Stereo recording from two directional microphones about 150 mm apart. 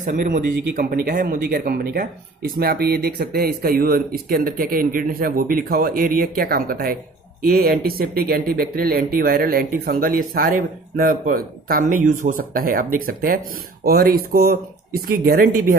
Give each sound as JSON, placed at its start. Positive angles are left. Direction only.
{"t": 0.0, "sound": "speech", "side_deg": -60}
{"t": 0.7, "sound": "speech", "side_deg": -75}
{"t": 13.8, "sound": "speech", "side_deg": -85}